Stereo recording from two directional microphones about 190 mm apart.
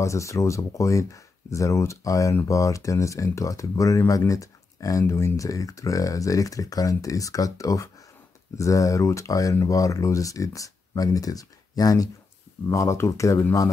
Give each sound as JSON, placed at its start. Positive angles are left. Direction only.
{"t": 0.0, "sound": "speech", "side_deg": 15}